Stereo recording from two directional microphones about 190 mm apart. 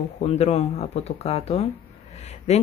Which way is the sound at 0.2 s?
35° left (ahead or behind).